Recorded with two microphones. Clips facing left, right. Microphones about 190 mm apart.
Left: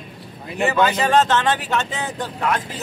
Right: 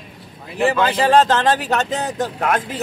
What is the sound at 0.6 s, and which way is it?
Speech, 30° right (ahead or behind).